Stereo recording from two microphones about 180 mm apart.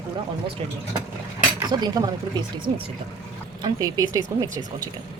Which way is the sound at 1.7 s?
25° right (ahead or behind).